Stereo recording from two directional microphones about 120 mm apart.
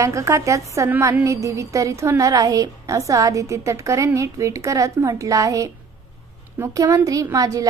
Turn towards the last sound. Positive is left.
turn(degrees=-30)  # may be behind; listen again after turning